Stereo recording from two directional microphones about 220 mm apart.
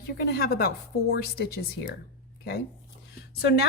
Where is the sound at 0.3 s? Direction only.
45° left (ahead or behind).